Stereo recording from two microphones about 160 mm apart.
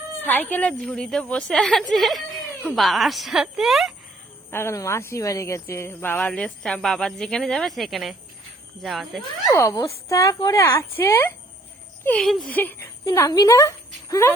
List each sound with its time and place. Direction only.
0.2 s a woman's voice: 10° left (ahead or behind)
4.5 s a woman's voice: 15° left (ahead or behind); by 9.2 s centre (ahead or behind)
9.5 s a woman's voice: 20° left (ahead or behind)
12.0 s speech: 5° left (ahead or behind)
13.1 s a woman's voice: 20° left (ahead or behind)